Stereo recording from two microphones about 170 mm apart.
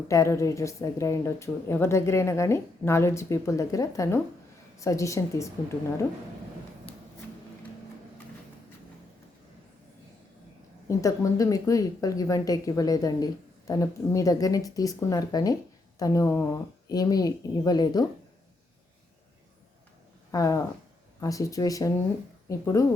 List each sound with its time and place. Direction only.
0.1 s speech: 15° left (ahead or behind)
10.8 s speech: 20° left (ahead or behind)
20.3 s speech: 20° left (ahead or behind)